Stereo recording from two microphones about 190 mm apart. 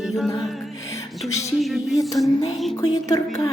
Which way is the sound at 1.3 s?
15° left (ahead or behind).